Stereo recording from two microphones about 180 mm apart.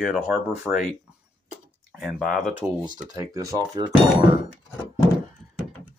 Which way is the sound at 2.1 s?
Centre (ahead or behind).